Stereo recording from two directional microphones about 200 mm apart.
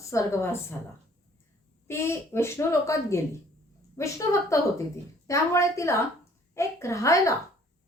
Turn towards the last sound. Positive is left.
turn(degrees=15)  # may be behind; listen again after turning